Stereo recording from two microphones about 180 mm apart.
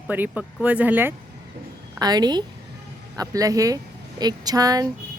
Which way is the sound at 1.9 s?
20° right (ahead or behind).